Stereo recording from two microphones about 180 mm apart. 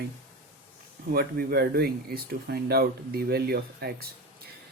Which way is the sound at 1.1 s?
60° right (ahead or behind).